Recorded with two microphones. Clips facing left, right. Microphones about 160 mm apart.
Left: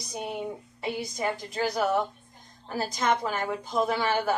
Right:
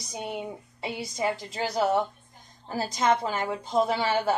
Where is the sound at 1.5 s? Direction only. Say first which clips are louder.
Even; 25° right (ahead or behind).